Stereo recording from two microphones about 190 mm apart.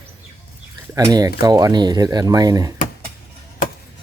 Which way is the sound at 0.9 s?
20° right (ahead or behind).